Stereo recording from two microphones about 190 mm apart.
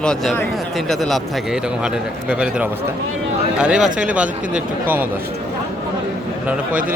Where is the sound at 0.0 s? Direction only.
5° left (ahead or behind).